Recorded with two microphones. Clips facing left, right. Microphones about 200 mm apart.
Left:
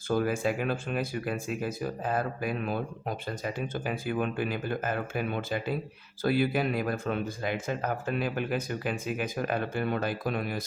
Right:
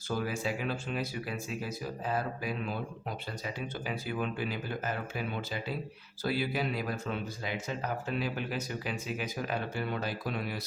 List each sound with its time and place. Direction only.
0.1 s speech: 50° left (ahead or behind)